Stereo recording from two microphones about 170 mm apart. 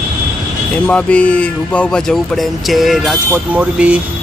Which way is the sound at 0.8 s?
5° left (ahead or behind).